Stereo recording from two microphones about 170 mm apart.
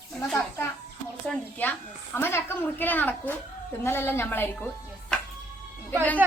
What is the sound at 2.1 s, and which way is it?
A woman's voice, 15° left (ahead or behind).